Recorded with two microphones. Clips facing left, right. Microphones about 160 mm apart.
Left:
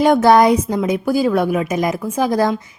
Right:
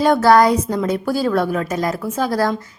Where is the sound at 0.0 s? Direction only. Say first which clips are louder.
Left 1 dB; 20° left (ahead or behind).